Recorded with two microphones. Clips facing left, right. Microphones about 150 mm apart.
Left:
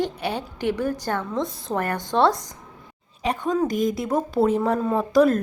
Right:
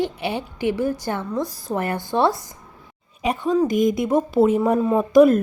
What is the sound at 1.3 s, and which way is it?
Speech, 25° left (ahead or behind).